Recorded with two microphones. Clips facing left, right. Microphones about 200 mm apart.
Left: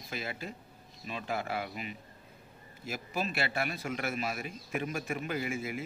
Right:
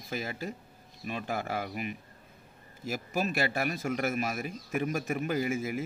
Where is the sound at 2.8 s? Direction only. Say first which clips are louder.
Right 4 dB; 45° right (ahead or behind).